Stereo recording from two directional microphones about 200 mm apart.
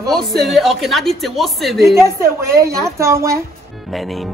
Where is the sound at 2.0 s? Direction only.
15° right (ahead or behind).